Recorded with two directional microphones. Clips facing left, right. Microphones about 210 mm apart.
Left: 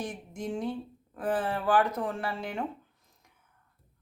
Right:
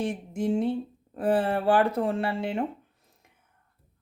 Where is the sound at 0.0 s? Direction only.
25° right (ahead or behind).